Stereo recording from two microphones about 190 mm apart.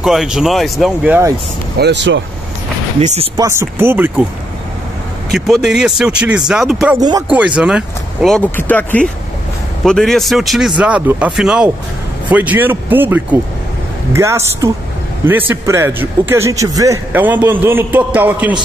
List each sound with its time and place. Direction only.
0.0 s speech: 5° right (ahead or behind)
1.8 s speech: 65° right (ahead or behind)
3.0 s speech: 35° right (ahead or behind)
3.3 s a man's voice: 15° right (ahead or behind)
5.3 s speech: centre (ahead or behind)
7.0 s speech: 20° right (ahead or behind)
7.2 s a man's voice: 5° right (ahead or behind)